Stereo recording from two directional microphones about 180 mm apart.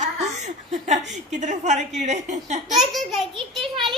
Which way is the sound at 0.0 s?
40° right (ahead or behind).